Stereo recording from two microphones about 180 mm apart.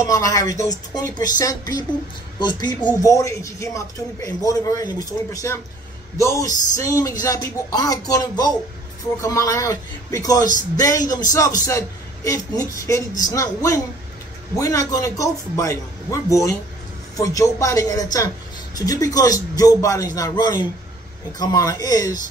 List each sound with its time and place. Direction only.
0.0 s speech: 20° left (ahead or behind)